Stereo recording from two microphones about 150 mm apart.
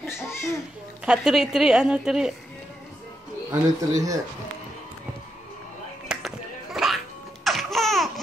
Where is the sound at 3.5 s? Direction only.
20° right (ahead or behind).